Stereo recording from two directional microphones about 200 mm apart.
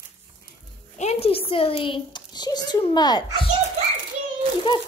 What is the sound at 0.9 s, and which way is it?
A child's voice, 30° left (ahead or behind).